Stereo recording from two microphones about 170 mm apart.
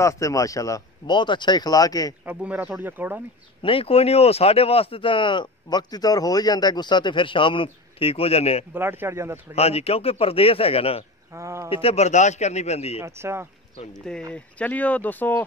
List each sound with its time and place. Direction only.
0.0 s speech: 20° left (ahead or behind)
2.2 s speech: 10° right (ahead or behind)
3.6 s speech: 35° left (ahead or behind)
8.7 s speech: 10° right (ahead or behind)
9.6 s speech: 35° left (ahead or behind)
11.3 s speech: 15° right (ahead or behind)
11.7 s speech: 35° left (ahead or behind)
13.0 s speech: 15° right (ahead or behind)
14.3 s speech: 10° left (ahead or behind)